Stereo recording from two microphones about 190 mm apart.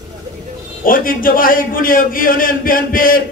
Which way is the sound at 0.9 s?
45° left (ahead or behind).